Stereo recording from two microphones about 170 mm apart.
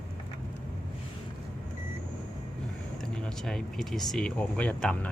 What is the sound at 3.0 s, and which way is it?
Speech, 5° left (ahead or behind).